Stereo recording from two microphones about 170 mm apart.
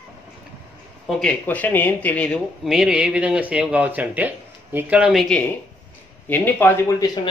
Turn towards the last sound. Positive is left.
turn(degrees=10)  # may be behind; listen again after turning